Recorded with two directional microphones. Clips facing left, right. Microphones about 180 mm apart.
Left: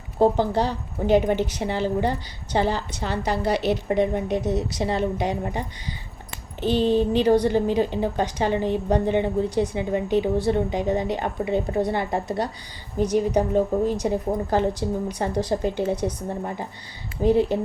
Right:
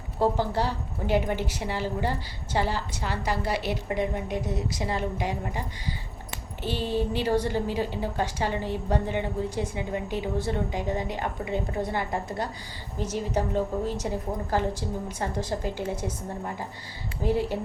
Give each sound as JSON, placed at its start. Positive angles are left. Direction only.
{"t": 0.2, "sound": "a woman's voice", "side_deg": 20}
{"t": 4.4, "sound": "a woman's voice", "side_deg": 75}
{"t": 4.8, "sound": "a woman's voice", "side_deg": 25}
{"t": 17.2, "sound": "a woman's voice", "side_deg": 20}